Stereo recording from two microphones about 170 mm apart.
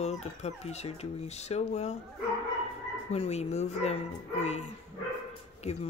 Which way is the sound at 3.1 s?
40° left (ahead or behind).